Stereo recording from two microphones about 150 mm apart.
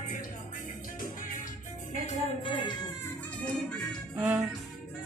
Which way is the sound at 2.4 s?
30° left (ahead or behind).